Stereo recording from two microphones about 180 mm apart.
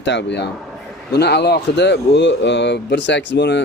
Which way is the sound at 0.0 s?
75° left (ahead or behind).